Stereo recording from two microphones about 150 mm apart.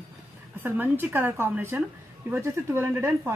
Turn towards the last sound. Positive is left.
turn(degrees=-15)  # may be behind; listen again after turning